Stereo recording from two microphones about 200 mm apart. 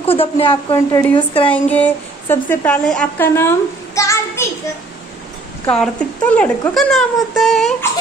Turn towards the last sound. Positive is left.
turn(degrees=0)  # may be behind; listen again after turning